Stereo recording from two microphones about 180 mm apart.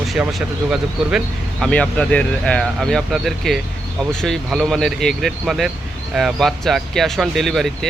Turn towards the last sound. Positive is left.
turn(degrees=0)  # may be behind; listen again after turning